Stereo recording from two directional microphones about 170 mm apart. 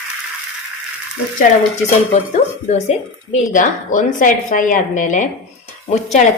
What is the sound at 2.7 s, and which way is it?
Speech, 45° left (ahead or behind).